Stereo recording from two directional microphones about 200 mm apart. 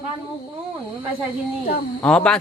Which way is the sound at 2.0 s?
5° left (ahead or behind).